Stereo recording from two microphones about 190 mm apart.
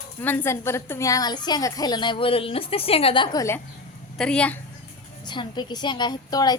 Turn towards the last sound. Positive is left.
turn(degrees=20)  # may be behind; listen again after turning